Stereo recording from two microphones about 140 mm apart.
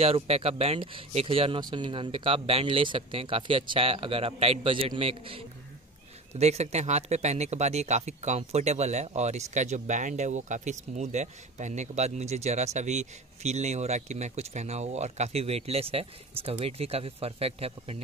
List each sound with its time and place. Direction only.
0.0 s speech: 45° right (ahead or behind)
6.3 s speech: 50° right (ahead or behind)